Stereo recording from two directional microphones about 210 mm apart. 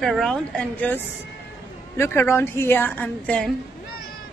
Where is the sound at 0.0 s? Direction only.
Centre (ahead or behind).